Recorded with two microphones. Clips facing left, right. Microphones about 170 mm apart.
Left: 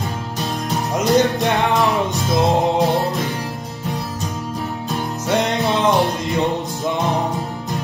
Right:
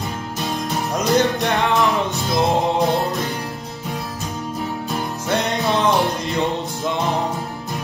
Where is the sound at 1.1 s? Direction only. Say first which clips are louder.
Left 2 dB; 15° left (ahead or behind).